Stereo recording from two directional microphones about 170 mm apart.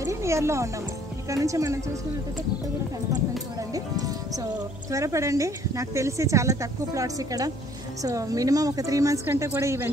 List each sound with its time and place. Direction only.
0.0 s music: 15° right (ahead or behind)
1.3 s speech: 20° right (ahead or behind)
3.7 s speech: 20° right (ahead or behind)